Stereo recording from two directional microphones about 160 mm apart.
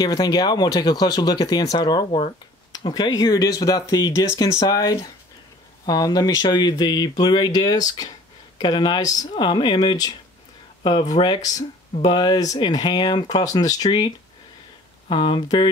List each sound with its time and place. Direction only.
0.0 s speech: 25° left (ahead or behind)